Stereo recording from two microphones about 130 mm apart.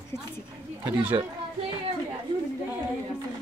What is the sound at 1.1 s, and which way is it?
Speech, 35° right (ahead or behind).